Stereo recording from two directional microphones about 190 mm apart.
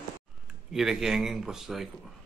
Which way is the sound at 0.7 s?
Centre (ahead or behind).